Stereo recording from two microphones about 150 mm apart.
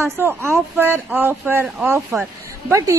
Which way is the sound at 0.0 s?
15° right (ahead or behind).